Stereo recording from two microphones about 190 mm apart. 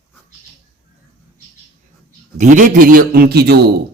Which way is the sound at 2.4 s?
40° right (ahead or behind).